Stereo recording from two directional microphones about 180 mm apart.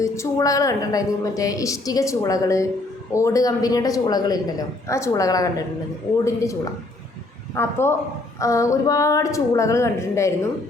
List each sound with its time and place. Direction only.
0.0 s a woman's voice: 15° left (ahead or behind)